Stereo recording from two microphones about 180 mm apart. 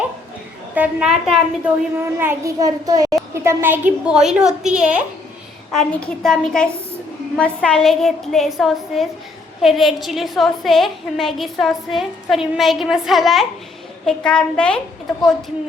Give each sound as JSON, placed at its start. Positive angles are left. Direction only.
{"t": 0.7, "sound": "a woman's voice", "side_deg": -5}
{"t": 2.1, "sound": "a child's voice", "side_deg": -15}